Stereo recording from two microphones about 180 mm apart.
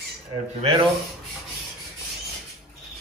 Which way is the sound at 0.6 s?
35° right (ahead or behind).